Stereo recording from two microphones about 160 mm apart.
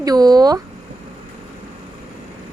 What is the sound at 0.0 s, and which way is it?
Speech, 25° right (ahead or behind).